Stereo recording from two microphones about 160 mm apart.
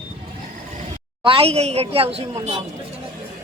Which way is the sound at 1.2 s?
35° right (ahead or behind).